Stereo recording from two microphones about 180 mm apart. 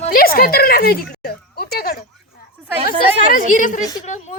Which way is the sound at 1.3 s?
60° left (ahead or behind).